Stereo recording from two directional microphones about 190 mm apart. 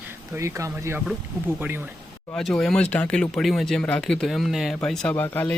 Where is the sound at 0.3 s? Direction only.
15° right (ahead or behind).